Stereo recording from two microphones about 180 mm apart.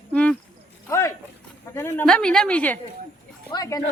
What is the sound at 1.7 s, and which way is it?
Speech, 15° left (ahead or behind).